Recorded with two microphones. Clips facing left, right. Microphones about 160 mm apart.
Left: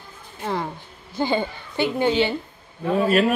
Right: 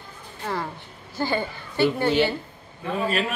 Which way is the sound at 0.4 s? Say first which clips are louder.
Left 3 dB; 15° left (ahead or behind).